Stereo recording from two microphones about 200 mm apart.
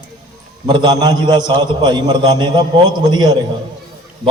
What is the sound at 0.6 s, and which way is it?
A man's voice, 20° right (ahead or behind).